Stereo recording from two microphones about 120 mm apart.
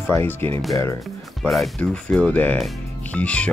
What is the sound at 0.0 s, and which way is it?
Speech, 20° left (ahead or behind).